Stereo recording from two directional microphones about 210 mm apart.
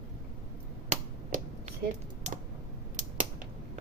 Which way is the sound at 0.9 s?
35° right (ahead or behind).